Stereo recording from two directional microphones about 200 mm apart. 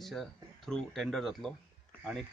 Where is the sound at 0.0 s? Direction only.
Centre (ahead or behind).